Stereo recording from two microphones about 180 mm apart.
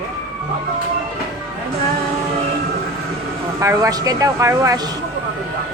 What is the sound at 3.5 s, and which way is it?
Speech, 20° right (ahead or behind).